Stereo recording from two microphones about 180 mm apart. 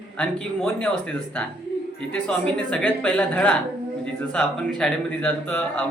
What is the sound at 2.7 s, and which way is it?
Speech, 5° left (ahead or behind).